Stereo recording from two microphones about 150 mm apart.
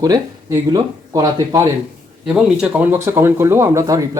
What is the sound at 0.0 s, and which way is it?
Speech, 25° right (ahead or behind).